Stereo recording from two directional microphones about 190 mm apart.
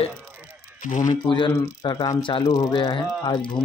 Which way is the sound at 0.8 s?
40° left (ahead or behind).